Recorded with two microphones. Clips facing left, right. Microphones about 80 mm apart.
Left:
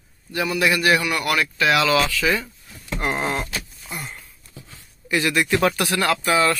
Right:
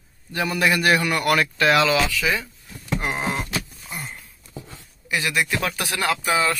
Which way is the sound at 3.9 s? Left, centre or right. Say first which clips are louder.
Left 2 dB; centre.